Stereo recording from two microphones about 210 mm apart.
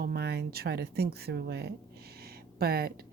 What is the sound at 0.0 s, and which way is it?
Speech, 50° right (ahead or behind).